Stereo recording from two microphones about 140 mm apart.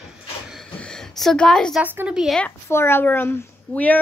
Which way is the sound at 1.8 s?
10° right (ahead or behind).